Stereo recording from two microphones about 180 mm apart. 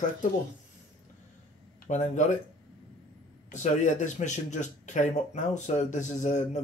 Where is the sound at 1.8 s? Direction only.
45° left (ahead or behind).